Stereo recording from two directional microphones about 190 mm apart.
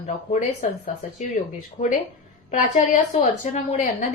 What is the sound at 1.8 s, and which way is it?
A woman's voice, 40° left (ahead or behind).